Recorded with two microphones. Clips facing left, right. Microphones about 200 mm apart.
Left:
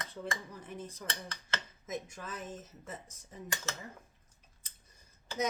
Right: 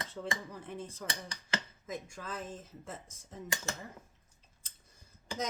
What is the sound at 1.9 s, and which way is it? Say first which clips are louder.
Speech: left 1 dB; 20° left (ahead or behind).